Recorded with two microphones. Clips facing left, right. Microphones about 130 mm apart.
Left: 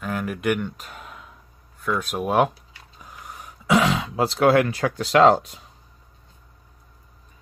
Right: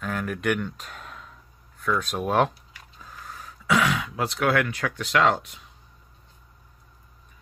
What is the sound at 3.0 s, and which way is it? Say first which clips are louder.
Throat clearing: left 1 dB; 15° left (ahead or behind).